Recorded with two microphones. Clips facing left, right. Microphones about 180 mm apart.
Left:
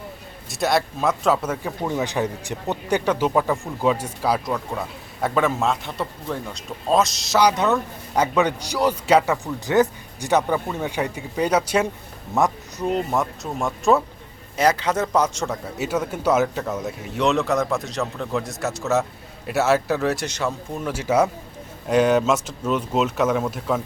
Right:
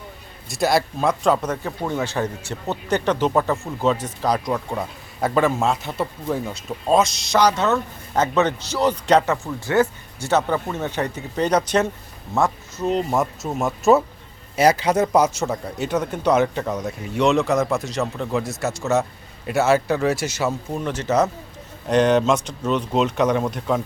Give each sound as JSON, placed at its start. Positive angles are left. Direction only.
{"t": 0.4, "sound": "speech", "side_deg": 0}
{"t": 2.0, "sound": "speech", "side_deg": 15}
{"t": 12.9, "sound": "a man's voice", "side_deg": 0}
{"t": 15.8, "sound": "speech", "side_deg": 5}
{"t": 20.8, "sound": "speech", "side_deg": 10}